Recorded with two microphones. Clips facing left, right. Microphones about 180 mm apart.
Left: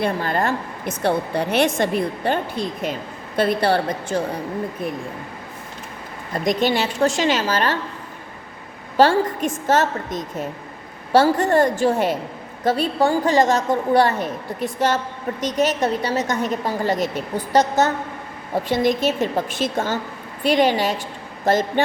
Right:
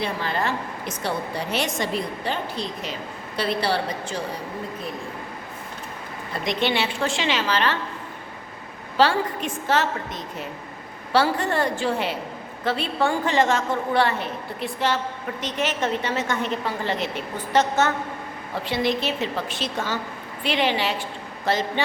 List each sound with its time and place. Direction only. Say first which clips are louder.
0.0 s a woman's voice: left 5 dB; 50° left (ahead or behind)
6.3 s a woman's voice: left 4 dB; 45° left (ahead or behind)
9.0 s a woman's voice: left 5 dB; 45° left (ahead or behind)